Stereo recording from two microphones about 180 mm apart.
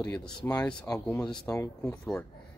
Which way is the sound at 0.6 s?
5° left (ahead or behind).